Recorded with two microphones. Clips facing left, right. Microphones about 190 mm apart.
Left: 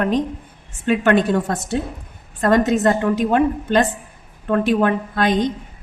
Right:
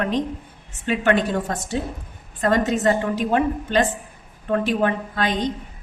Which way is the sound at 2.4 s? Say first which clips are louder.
Left 4 dB; 55° left (ahead or behind).